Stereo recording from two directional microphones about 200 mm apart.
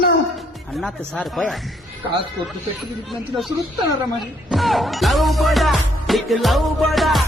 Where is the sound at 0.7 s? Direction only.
Centre (ahead or behind).